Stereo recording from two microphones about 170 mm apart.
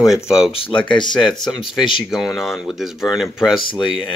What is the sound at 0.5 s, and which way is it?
Speech, 30° left (ahead or behind).